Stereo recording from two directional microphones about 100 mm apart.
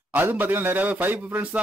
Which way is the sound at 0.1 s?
20° right (ahead or behind).